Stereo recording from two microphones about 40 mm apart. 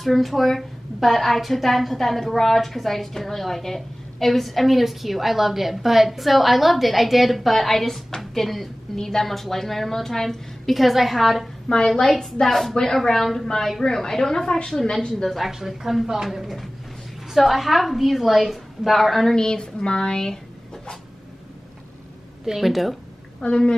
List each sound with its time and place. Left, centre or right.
0.0 s a woman's voice: centre
11.7 s speech: left
12.1 s a woman's voice: centre
15.2 s a woman's voice: centre
19.3 s speech: centre
22.4 s a woman's voice: centre
23.4 s speech: left